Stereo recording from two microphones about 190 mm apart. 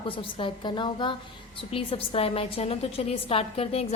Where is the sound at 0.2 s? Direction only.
25° left (ahead or behind).